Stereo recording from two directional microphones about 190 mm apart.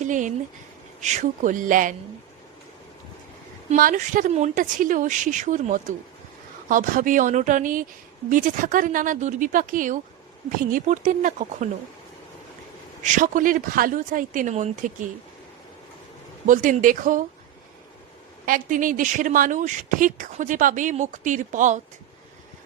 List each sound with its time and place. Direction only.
0.0 s speech: 40° right (ahead or behind)
3.7 s speech: 45° right (ahead or behind)
13.0 s speech: 40° right (ahead or behind)
16.5 s speech: 45° right (ahead or behind)
18.4 s speech: 45° right (ahead or behind)